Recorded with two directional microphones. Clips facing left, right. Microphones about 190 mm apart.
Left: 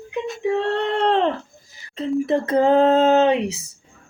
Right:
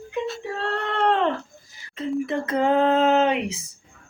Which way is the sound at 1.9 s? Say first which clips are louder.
Left 5 dB; 35° left (ahead or behind).